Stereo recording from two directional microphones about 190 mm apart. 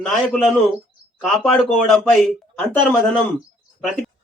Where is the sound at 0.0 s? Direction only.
Centre (ahead or behind).